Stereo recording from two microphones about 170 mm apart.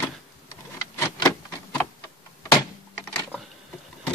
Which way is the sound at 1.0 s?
25° left (ahead or behind).